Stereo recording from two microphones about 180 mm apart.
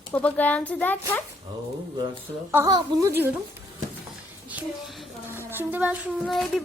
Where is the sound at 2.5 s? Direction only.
15° right (ahead or behind).